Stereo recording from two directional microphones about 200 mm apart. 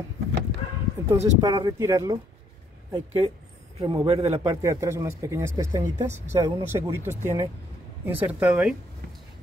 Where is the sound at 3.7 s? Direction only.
30° right (ahead or behind).